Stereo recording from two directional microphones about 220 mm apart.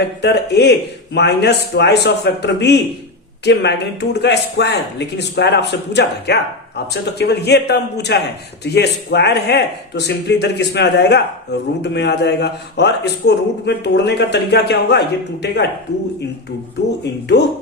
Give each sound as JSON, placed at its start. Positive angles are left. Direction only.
{"t": 0.2, "sound": "a man's voice", "side_deg": 50}
{"t": 17.0, "sound": "a man's voice", "side_deg": 50}